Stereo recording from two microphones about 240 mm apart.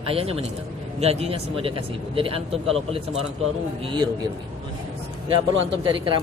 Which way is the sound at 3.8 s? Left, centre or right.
Right.